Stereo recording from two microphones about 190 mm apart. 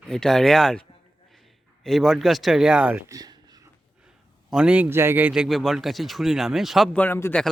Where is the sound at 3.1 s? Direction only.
20° right (ahead or behind).